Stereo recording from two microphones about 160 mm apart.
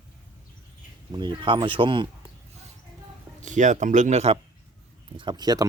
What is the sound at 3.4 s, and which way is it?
Speech, 50° right (ahead or behind).